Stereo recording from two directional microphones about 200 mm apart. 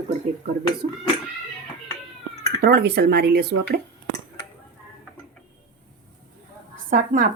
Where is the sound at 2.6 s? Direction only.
55° right (ahead or behind).